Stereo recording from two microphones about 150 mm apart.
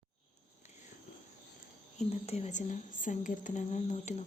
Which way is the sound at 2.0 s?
45° left (ahead or behind).